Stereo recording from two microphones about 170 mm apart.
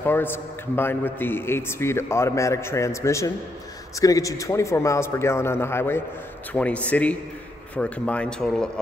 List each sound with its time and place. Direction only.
0.0 s a man's voice: 10° left (ahead or behind)